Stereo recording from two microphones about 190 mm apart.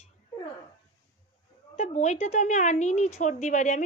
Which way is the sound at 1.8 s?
35° left (ahead or behind).